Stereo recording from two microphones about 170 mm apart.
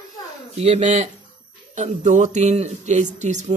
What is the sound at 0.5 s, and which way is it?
Speech, 35° right (ahead or behind).